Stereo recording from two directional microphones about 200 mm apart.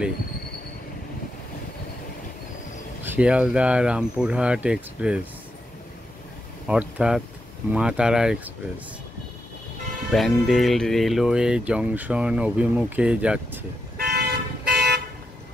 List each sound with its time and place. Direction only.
3.0 s speech: 10° right (ahead or behind)
6.7 s speech: 5° right (ahead or behind)
10.1 s speech: centre (ahead or behind)
13.9 s toot: 50° right (ahead or behind)